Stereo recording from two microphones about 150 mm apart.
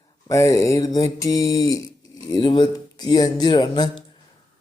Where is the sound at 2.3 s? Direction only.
35° left (ahead or behind).